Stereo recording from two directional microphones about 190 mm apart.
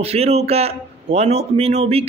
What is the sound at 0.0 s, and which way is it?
A man's voice, 30° right (ahead or behind).